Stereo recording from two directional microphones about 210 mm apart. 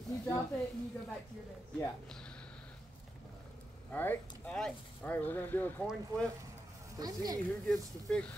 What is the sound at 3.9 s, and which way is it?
Speech, 5° left (ahead or behind).